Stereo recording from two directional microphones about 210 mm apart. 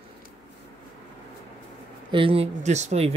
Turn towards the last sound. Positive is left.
turn(degrees=-30)  # may be behind; listen again after turning